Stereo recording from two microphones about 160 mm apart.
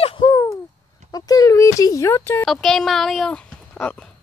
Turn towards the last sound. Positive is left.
turn(degrees=5)  # may be behind; listen again after turning